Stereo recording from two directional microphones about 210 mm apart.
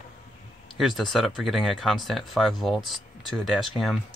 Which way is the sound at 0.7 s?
Centre (ahead or behind).